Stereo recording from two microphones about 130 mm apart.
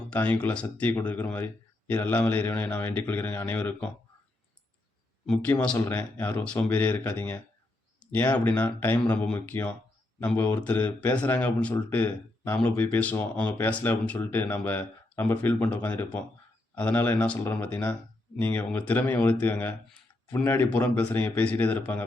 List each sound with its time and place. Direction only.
0.1 s speech: 10° left (ahead or behind)
5.2 s speech: 10° left (ahead or behind)